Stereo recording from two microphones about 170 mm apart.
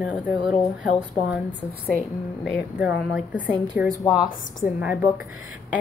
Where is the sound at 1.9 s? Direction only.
60° right (ahead or behind).